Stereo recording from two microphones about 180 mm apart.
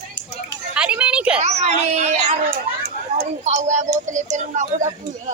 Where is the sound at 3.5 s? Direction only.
40° right (ahead or behind).